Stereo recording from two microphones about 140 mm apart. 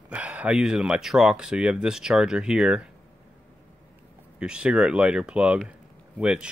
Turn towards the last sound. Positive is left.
turn(degrees=-5)  # may be behind; listen again after turning